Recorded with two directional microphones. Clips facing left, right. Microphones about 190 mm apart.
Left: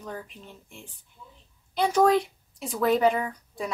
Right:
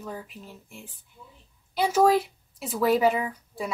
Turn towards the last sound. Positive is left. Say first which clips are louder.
# even
turn(degrees=-5)  # may be behind; listen again after turning